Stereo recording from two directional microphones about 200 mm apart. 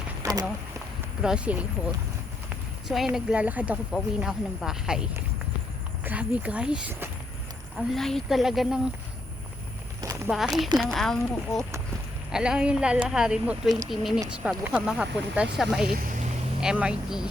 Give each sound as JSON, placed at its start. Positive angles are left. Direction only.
{"t": 0.2, "sound": "a sound", "side_deg": -20}
{"t": 1.2, "sound": "speech", "side_deg": -5}
{"t": 2.8, "sound": "speech", "side_deg": 0}
{"t": 6.1, "sound": "speech", "side_deg": -5}
{"t": 10.0, "sound": "a sound", "side_deg": -15}
{"t": 10.2, "sound": "speech", "side_deg": 0}